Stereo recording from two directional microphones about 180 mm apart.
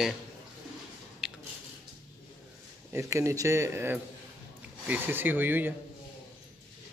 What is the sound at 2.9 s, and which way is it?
Speech, 15° right (ahead or behind).